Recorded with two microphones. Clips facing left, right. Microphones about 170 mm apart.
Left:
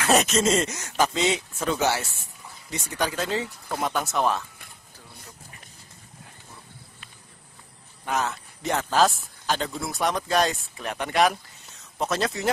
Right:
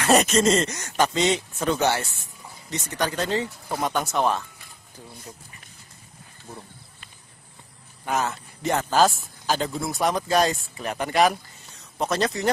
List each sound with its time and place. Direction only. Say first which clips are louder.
0.0 s a man's voice: right 2 dB; centre (ahead or behind)
8.0 s a man's voice: right 1 dB; centre (ahead or behind)